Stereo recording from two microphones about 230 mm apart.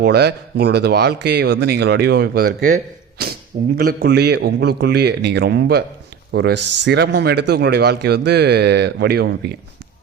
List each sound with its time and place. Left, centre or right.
0.0 s speech: right